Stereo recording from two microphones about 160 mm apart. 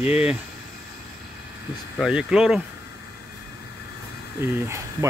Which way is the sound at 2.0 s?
5° right (ahead or behind).